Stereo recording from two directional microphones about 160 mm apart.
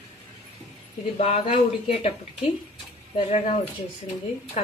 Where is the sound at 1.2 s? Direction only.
40° left (ahead or behind).